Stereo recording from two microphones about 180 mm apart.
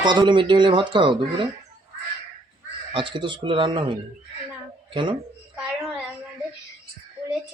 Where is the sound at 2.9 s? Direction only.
30° right (ahead or behind).